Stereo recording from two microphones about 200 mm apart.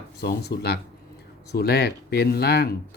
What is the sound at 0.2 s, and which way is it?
Speech, 55° left (ahead or behind).